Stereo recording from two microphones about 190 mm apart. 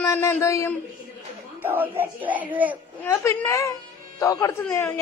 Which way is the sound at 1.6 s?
10° right (ahead or behind).